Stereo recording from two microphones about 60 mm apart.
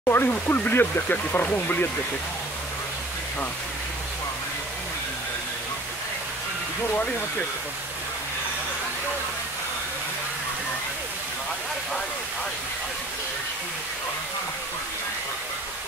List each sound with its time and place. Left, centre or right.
0.0 s speech: left